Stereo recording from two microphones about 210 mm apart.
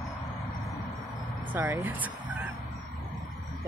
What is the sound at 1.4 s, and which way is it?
Speech, 10° right (ahead or behind).